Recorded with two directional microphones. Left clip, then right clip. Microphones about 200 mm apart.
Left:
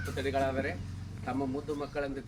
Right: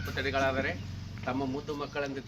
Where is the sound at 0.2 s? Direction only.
30° right (ahead or behind).